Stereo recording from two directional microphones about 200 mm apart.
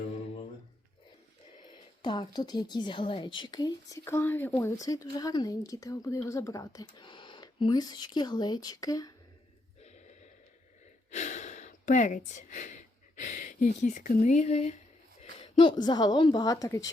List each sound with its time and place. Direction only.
2.0 s a woman's voice: 20° left (ahead or behind)
9.8 s gasp: 35° left (ahead or behind)
11.1 s a woman's voice: 35° left (ahead or behind); by 16.9 s 15° left (ahead or behind)